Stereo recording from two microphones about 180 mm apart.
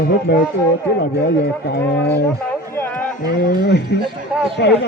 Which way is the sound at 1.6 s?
65° left (ahead or behind).